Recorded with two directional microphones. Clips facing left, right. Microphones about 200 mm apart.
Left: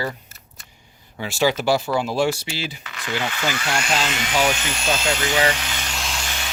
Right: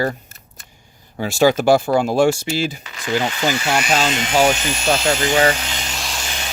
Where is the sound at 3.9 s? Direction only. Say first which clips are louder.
Right 6 dB; 40° right (ahead or behind).